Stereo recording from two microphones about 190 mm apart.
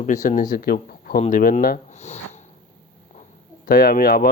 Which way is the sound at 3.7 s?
45° left (ahead or behind).